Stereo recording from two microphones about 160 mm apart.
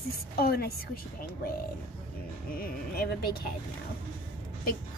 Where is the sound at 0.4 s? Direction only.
75° left (ahead or behind).